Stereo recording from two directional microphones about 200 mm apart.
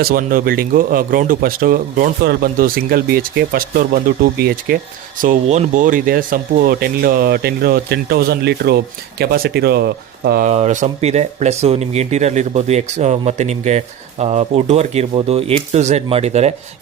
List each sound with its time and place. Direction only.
0.0 s speech: 45° right (ahead or behind)